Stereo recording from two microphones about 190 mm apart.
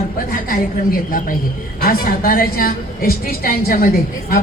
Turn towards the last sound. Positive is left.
turn(degrees=50)  # may be behind; listen again after turning